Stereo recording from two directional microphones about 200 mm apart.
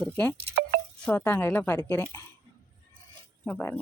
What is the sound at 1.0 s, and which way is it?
Speech, 10° left (ahead or behind).